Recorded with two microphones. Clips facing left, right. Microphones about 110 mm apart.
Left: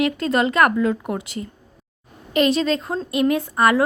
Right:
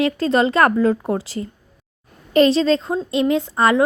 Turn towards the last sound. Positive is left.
turn(degrees=-25)  # may be behind; listen again after turning